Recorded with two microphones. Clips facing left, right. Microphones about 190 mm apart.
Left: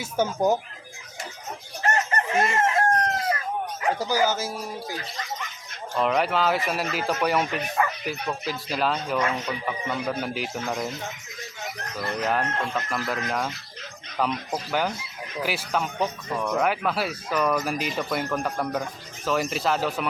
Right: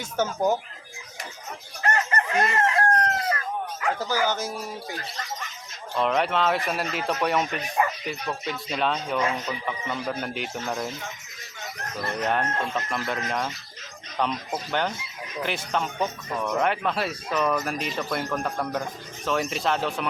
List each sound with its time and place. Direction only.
0.0 s speech: 10° left (ahead or behind)
1.8 s chicken: 25° left (ahead or behind)
3.9 s speech: 10° left (ahead or behind)
6.0 s speech: centre (ahead or behind)
12.2 s speech: centre (ahead or behind)